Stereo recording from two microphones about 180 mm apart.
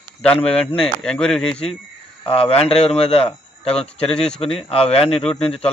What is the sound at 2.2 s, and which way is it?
A man's voice, 35° left (ahead or behind).